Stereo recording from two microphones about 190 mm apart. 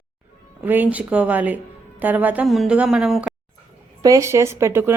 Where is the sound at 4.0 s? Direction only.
15° right (ahead or behind).